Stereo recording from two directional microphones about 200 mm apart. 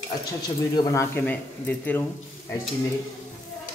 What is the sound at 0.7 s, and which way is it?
A man's voice, 15° left (ahead or behind).